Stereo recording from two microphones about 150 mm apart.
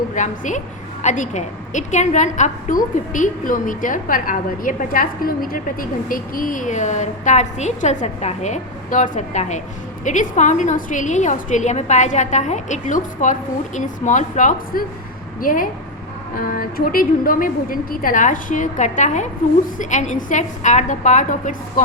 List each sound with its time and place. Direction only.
0.1 s a woman's voice: 55° left (ahead or behind)